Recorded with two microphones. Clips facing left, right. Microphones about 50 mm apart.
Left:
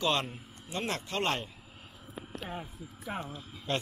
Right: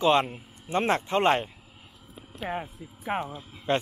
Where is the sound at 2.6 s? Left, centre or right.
Right.